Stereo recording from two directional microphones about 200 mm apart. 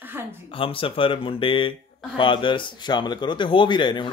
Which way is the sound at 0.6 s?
25° left (ahead or behind).